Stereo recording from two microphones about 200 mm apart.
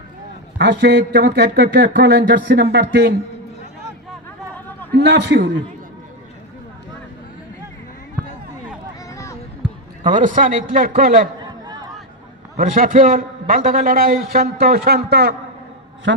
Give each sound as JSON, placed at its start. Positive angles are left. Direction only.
{"t": 0.6, "sound": "speech", "side_deg": -60}
{"t": 4.9, "sound": "speech", "side_deg": -60}
{"t": 9.1, "sound": "a sound", "side_deg": 15}
{"t": 9.6, "sound": "basketball bounce", "side_deg": -5}
{"t": 10.0, "sound": "a man's voice", "side_deg": -40}
{"t": 12.5, "sound": "a man's voice", "side_deg": -45}
{"t": 16.1, "sound": "speech", "side_deg": -65}